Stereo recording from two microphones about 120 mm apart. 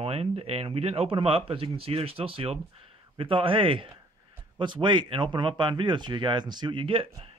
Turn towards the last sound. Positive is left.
turn(degrees=-45)  # may be behind; listen again after turning